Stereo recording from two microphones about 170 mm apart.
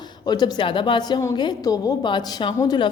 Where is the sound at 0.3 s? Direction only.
25° left (ahead or behind).